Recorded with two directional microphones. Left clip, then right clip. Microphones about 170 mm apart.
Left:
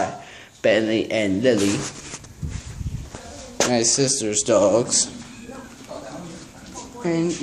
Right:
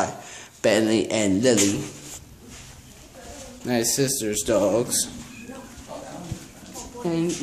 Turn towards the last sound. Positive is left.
turn(degrees=0)  # may be behind; listen again after turning